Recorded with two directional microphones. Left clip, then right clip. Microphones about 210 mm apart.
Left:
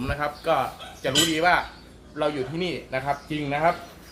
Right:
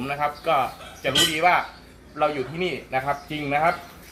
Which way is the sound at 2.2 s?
15° left (ahead or behind).